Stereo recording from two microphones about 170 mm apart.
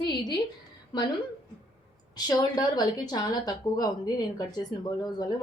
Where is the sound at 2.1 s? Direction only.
25° left (ahead or behind).